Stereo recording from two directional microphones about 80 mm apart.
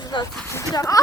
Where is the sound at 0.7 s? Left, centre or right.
Left.